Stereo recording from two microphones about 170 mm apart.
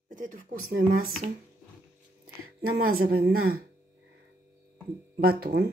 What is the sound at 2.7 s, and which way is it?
Speech, 60° right (ahead or behind).